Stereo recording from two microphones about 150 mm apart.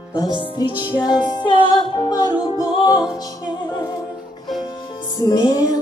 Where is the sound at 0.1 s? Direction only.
25° left (ahead or behind).